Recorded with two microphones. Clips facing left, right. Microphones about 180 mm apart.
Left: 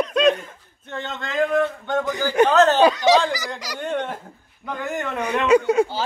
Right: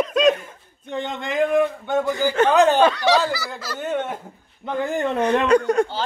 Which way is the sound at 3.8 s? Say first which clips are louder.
Right 1 dB; 5° right (ahead or behind).